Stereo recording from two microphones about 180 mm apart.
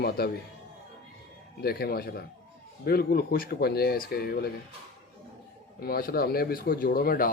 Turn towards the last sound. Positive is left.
turn(degrees=55)  # may be behind; listen again after turning